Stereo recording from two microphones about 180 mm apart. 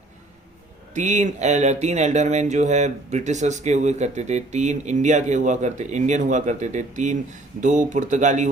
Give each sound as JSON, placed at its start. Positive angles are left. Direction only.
{"t": 0.9, "sound": "speech", "side_deg": -40}